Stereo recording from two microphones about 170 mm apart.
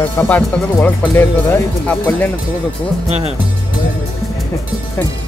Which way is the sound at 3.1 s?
40° right (ahead or behind).